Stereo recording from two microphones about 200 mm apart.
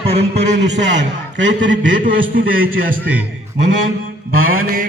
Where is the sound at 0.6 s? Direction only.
60° right (ahead or behind).